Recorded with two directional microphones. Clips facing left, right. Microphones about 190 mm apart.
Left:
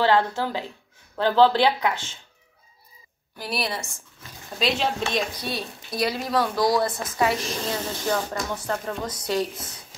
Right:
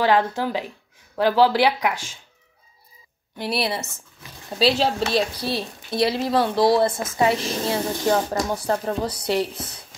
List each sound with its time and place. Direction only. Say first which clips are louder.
0.0 s speech: right 1 dB; 15° right (ahead or behind)
3.3 s a woman's voice: right 4 dB; 30° right (ahead or behind)